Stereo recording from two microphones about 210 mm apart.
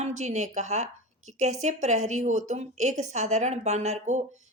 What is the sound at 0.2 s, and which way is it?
Speech, 35° right (ahead or behind).